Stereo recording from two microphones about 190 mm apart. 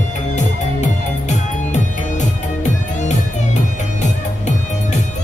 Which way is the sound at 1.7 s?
40° left (ahead or behind).